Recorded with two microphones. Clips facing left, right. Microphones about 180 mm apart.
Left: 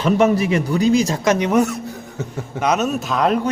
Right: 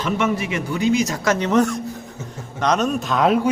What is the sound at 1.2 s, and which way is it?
Speech, 15° left (ahead or behind).